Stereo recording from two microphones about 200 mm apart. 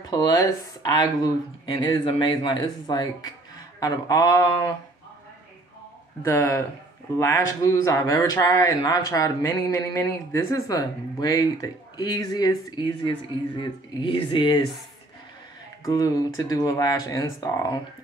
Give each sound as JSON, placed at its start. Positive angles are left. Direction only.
{"t": 0.0, "sound": "speech", "side_deg": 20}
{"t": 6.2, "sound": "speech", "side_deg": 15}
{"t": 15.8, "sound": "speech", "side_deg": 15}